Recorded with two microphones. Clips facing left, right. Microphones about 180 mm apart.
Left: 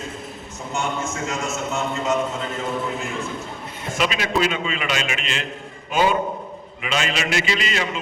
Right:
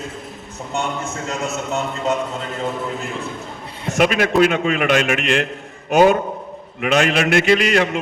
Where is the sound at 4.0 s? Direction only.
50° right (ahead or behind).